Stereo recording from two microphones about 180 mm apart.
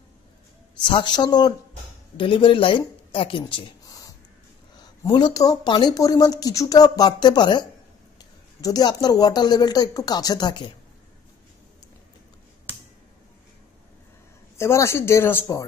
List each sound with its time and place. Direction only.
0.8 s speech: 25° left (ahead or behind)
14.6 s speech: 15° left (ahead or behind)